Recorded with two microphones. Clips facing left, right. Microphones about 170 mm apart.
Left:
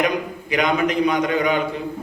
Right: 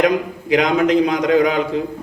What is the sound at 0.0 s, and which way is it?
A man's voice, 90° right.